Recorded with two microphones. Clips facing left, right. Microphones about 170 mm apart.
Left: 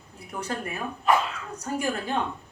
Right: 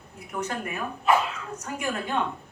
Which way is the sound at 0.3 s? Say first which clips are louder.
Right 1 dB; 35° left (ahead or behind).